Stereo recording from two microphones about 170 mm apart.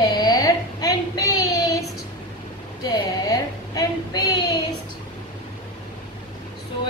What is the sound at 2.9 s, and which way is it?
A woman's voice, 20° left (ahead or behind).